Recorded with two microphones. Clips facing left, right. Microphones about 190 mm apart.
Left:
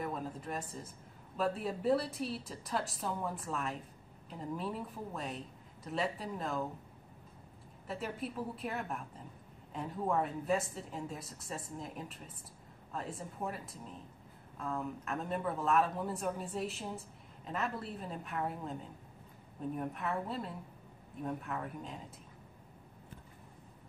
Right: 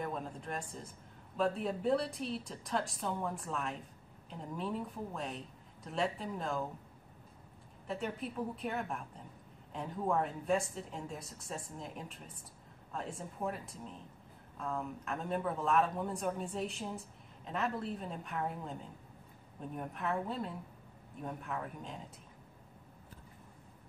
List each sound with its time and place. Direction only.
0.0 s a woman's voice: centre (ahead or behind)
7.8 s a woman's voice: centre (ahead or behind)